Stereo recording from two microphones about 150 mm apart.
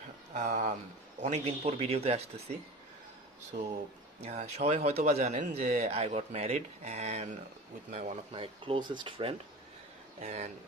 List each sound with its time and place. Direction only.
0.3 s speech: 55° right (ahead or behind)
3.5 s speech: 70° right (ahead or behind)
4.2 s speech: 50° right (ahead or behind)
10.2 s speech: 50° right (ahead or behind)